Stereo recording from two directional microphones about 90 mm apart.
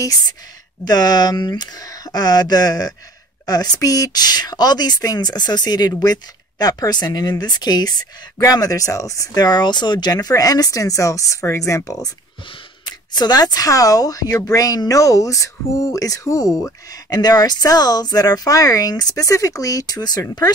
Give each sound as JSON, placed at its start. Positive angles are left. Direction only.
{"t": 0.8, "sound": "speech", "side_deg": 50}
{"t": 12.8, "sound": "speech", "side_deg": 50}